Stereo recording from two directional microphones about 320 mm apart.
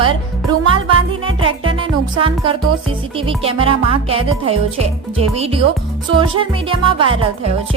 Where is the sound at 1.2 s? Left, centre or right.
Centre.